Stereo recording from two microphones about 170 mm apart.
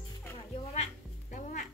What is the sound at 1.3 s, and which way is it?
Music, 45° left (ahead or behind).